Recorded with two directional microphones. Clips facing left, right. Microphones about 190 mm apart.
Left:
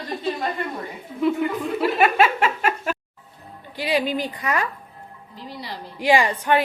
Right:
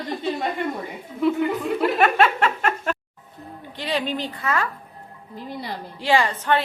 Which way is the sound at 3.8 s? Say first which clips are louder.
Left 3 dB; 10° left (ahead or behind).